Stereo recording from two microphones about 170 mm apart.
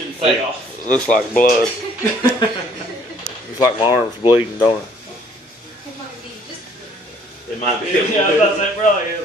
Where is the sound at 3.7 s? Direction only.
25° left (ahead or behind).